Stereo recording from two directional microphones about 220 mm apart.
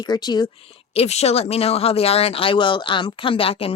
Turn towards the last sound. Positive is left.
turn(degrees=25)  # may be behind; listen again after turning